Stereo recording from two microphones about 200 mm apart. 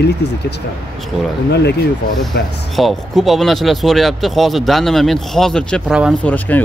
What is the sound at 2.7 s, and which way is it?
Speech, centre (ahead or behind).